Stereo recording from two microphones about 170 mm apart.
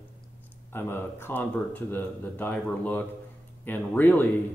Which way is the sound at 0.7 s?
15° left (ahead or behind).